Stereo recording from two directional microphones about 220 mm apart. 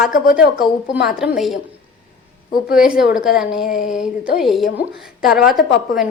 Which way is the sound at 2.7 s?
5° right (ahead or behind).